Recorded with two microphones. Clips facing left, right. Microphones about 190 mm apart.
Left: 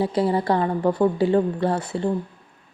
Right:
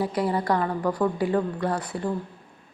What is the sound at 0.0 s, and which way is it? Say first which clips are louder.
A woman's voice: left 4 dB; 25° left (ahead or behind).